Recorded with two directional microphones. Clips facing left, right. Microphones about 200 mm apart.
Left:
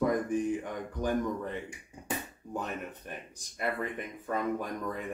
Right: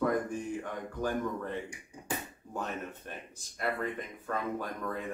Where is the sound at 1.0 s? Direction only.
15° left (ahead or behind).